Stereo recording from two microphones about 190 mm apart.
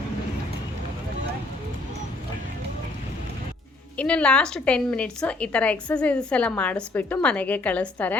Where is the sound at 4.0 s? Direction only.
5° left (ahead or behind).